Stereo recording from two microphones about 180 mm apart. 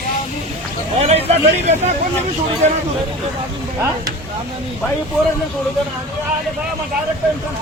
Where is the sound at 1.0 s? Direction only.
35° right (ahead or behind).